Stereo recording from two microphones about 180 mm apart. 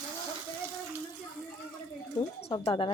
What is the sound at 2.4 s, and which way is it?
Speech, 30° left (ahead or behind).